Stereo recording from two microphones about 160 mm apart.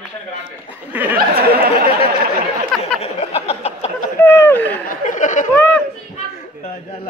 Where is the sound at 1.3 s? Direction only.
75° right (ahead or behind).